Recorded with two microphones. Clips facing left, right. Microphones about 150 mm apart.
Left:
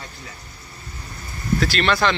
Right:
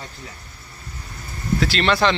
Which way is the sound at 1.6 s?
25° right (ahead or behind).